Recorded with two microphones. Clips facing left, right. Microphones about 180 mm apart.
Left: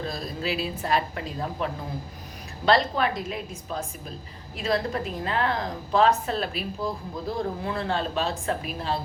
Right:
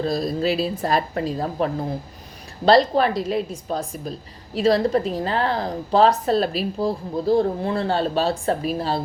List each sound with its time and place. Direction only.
0.1 s a woman's voice: 35° right (ahead or behind)